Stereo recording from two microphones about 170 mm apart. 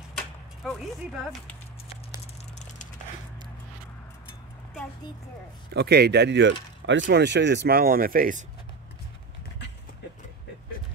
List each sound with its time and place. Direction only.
5.7 s speech: 75° right (ahead or behind); by 8.5 s 50° right (ahead or behind)